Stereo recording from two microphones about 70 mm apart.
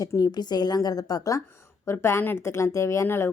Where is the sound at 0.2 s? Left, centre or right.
Left.